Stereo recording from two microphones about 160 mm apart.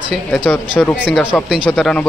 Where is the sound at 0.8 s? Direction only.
10° left (ahead or behind).